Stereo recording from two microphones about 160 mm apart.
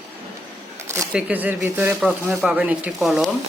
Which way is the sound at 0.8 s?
20° right (ahead or behind).